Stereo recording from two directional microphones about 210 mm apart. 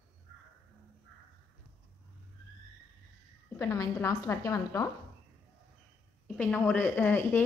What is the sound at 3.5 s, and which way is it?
A woman's voice, 15° left (ahead or behind).